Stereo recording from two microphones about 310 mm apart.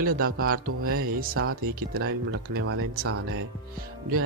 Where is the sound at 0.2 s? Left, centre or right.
Right.